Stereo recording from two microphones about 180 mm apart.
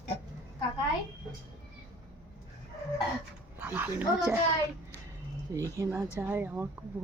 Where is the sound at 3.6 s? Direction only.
10° right (ahead or behind).